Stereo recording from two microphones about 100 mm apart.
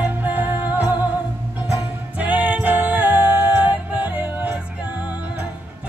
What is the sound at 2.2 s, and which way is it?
Music, 15° right (ahead or behind).